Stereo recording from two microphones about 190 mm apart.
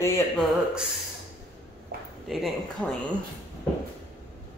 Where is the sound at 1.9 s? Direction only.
55° right (ahead or behind).